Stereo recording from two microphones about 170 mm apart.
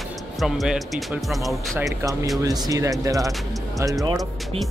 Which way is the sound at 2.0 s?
15° right (ahead or behind).